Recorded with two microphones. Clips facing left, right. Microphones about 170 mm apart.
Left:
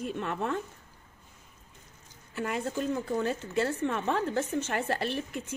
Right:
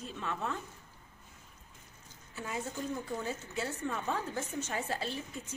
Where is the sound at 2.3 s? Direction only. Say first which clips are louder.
Left 7 dB; 80° left.